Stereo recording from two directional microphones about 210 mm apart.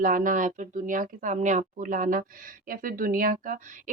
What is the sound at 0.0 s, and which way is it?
A woman's voice, 40° right (ahead or behind).